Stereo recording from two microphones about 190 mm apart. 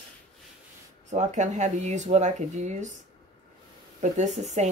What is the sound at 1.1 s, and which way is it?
Speech, 40° right (ahead or behind).